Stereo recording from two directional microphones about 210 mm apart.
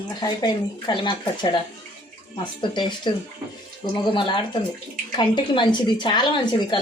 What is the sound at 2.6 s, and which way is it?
Speech, 20° left (ahead or behind).